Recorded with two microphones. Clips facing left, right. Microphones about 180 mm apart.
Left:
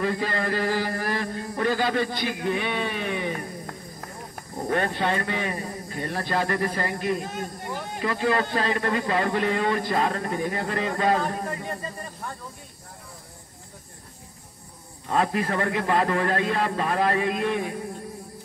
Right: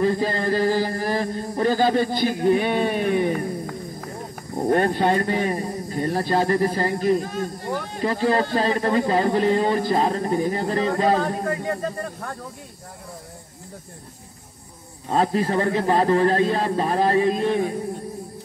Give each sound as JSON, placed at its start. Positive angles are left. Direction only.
{"t": 0.0, "sound": "speech", "side_deg": -35}
{"t": 4.6, "sound": "speech", "side_deg": -40}
{"t": 11.4, "sound": "speech", "side_deg": -65}
{"t": 15.0, "sound": "speech", "side_deg": -30}